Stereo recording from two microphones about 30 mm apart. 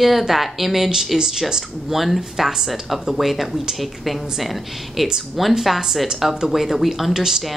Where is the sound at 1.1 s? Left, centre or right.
Centre.